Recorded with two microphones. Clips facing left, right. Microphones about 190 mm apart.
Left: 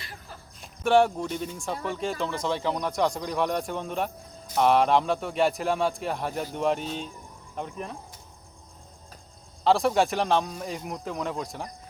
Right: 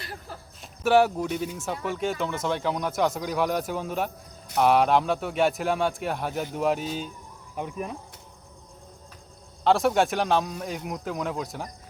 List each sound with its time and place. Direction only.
0.6 s speech: 5° right (ahead or behind)
9.6 s speech: centre (ahead or behind)